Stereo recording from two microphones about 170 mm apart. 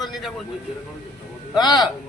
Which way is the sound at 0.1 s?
Centre (ahead or behind).